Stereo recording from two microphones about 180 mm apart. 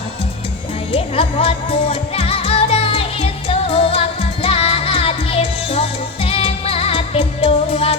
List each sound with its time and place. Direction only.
0.9 s music: 30° left (ahead or behind)